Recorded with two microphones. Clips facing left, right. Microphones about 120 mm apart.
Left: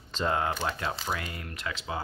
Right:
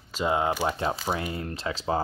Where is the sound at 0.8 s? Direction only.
25° right (ahead or behind).